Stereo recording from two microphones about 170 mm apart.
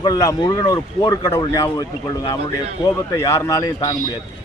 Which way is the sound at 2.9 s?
20° left (ahead or behind).